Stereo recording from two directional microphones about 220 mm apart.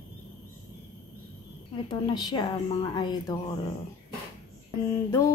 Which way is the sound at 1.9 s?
20° left (ahead or behind).